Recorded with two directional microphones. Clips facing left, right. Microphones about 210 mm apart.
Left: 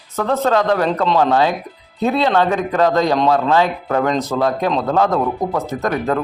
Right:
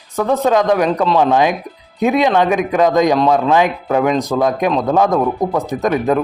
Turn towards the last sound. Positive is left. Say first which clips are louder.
# right 4 dB
turn(degrees=-15)  # may be behind; listen again after turning